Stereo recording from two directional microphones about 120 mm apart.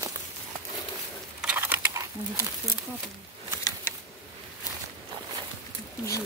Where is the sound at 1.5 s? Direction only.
20° right (ahead or behind).